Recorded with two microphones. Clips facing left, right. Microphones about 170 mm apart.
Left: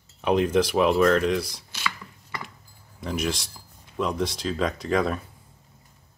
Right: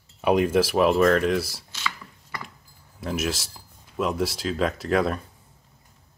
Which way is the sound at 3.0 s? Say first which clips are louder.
Even; 5° right (ahead or behind).